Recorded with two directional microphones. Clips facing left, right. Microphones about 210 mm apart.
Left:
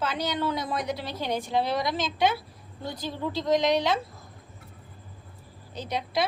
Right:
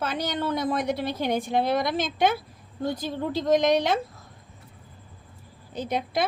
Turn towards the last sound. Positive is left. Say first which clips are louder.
# right 2 dB
turn(degrees=-50)  # may be behind; listen again after turning